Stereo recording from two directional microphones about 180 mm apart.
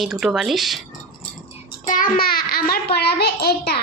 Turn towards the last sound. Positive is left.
turn(degrees=60)  # may be behind; listen again after turning